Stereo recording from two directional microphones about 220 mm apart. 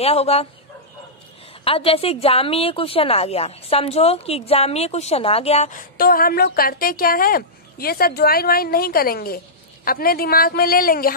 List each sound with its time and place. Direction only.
0.0 s a woman's voice: 30° left (ahead or behind)
1.6 s a woman's voice: 25° left (ahead or behind); by 11.1 s 40° left (ahead or behind)